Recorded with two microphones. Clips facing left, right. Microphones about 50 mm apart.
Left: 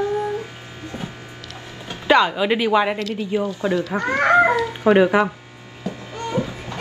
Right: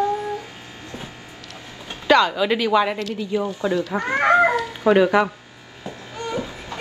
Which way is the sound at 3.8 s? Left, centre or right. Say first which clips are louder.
Left 1 dB; left.